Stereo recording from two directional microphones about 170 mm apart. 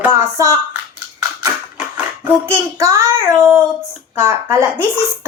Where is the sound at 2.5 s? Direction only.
15° right (ahead or behind).